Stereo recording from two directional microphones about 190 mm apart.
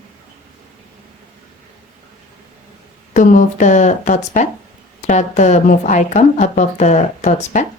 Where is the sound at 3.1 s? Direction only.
40° left (ahead or behind).